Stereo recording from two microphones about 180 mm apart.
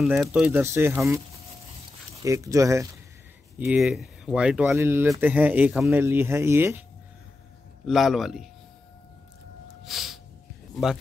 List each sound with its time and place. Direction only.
0.0 s speech: 5° right (ahead or behind)
2.2 s speech: 15° right (ahead or behind)
3.5 s speech: 5° right (ahead or behind)
7.8 s speech: centre (ahead or behind)
9.8 s snort: centre (ahead or behind)